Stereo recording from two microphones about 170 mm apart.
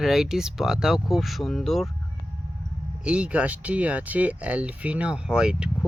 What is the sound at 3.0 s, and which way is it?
Speech, 5° right (ahead or behind).